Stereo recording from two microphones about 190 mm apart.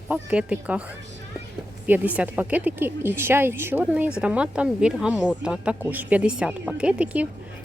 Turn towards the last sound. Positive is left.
turn(degrees=-5)  # may be behind; listen again after turning